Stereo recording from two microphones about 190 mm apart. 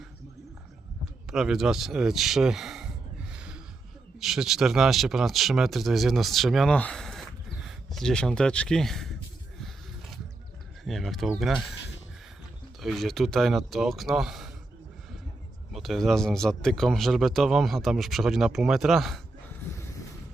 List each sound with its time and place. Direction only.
1.3 s speech: 5° right (ahead or behind)
10.8 s speech: centre (ahead or behind)
12.8 s speech: centre (ahead or behind)
15.7 s speech: centre (ahead or behind)